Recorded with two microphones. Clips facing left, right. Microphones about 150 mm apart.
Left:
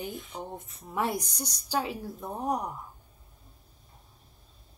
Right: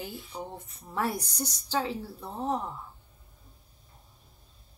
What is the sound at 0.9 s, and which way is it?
A woman's voice, 15° left (ahead or behind).